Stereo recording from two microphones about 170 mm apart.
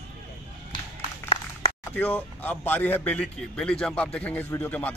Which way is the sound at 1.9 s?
10° left (ahead or behind).